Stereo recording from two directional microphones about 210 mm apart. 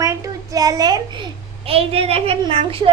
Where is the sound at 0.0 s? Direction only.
15° right (ahead or behind).